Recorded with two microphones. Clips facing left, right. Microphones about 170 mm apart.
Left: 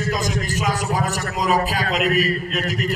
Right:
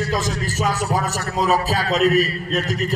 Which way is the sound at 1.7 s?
10° left (ahead or behind).